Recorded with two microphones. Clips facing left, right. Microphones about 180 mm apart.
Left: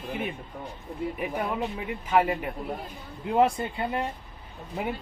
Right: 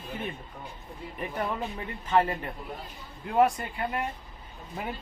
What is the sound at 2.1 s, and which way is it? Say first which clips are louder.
Speech: left 1 dB; 10° left (ahead or behind).